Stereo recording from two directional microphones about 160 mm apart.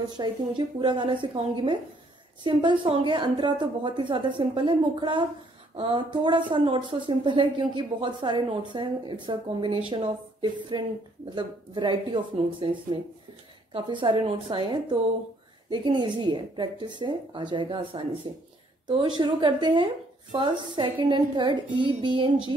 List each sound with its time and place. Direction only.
0.1 s a woman's voice: 30° right (ahead or behind)